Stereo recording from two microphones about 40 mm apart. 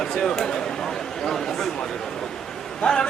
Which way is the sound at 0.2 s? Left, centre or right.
Centre.